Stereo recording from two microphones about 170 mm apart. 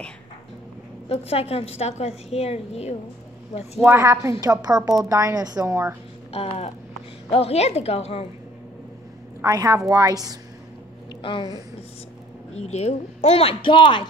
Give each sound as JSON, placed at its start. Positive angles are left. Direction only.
{"t": 1.0, "sound": "a woman's voice", "side_deg": 35}
{"t": 3.8, "sound": "a woman's voice", "side_deg": -15}
{"t": 6.3, "sound": "a woman's voice", "side_deg": 35}
{"t": 9.4, "sound": "a woman's voice", "side_deg": -20}
{"t": 11.2, "sound": "a woman's voice", "side_deg": 30}
{"t": 12.5, "sound": "a woman's voice", "side_deg": 40}